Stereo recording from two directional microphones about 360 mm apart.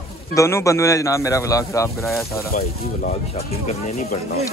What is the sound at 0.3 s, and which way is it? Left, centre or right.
Speech, centre.